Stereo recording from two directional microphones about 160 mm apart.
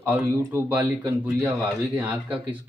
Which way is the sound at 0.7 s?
10° right (ahead or behind).